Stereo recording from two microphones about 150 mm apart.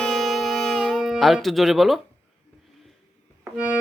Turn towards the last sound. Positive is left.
turn(degrees=-10)  # may be behind; listen again after turning